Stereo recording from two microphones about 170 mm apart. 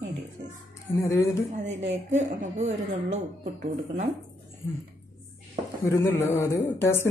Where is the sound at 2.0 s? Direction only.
45° right (ahead or behind).